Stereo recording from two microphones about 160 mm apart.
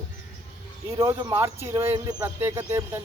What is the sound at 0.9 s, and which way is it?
Speech, 20° right (ahead or behind).